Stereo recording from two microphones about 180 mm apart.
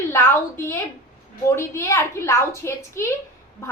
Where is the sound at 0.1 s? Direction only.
15° left (ahead or behind).